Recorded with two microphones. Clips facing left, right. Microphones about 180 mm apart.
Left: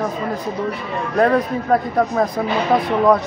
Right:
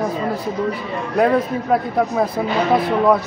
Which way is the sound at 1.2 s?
5° right (ahead or behind).